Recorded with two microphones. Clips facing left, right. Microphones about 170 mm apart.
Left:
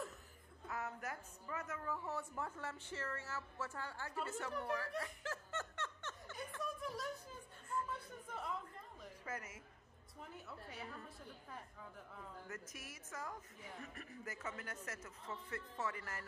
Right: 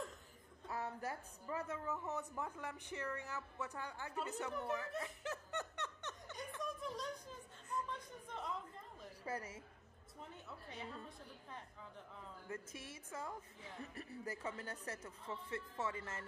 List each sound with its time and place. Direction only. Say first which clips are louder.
0.7 s a woman's voice: right 2 dB; 30° right (ahead or behind)
2.0 s a woman's voice: right 1 dB; 20° right (ahead or behind)
6.6 s a sound: even; centre (ahead or behind)
7.9 s chatter: even; 5° left (ahead or behind)
9.2 s speech: right 4 dB; 30° right (ahead or behind)
10.3 s a woman's voice: left 1 dB; 5° left (ahead or behind)
12.4 s a woman's voice: right 3 dB; 30° right (ahead or behind)